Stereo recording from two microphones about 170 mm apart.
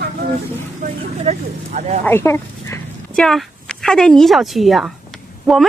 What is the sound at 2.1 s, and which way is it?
Speech, 15° left (ahead or behind).